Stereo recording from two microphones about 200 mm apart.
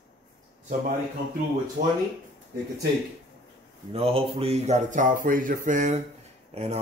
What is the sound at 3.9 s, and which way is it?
Speech, 30° right (ahead or behind).